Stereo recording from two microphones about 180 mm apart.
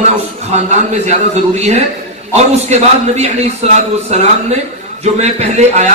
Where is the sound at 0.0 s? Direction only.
40° right (ahead or behind).